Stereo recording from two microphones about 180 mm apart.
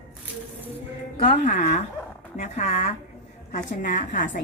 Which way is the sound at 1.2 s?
45° left (ahead or behind).